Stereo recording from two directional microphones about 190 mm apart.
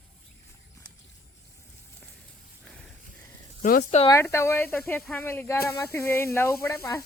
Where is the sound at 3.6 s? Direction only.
50° left (ahead or behind).